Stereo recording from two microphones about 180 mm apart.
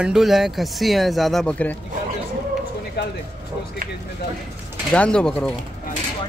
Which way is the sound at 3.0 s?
70° left (ahead or behind).